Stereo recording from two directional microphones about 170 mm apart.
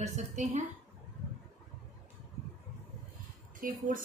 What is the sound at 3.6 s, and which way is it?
Speech, 55° right (ahead or behind).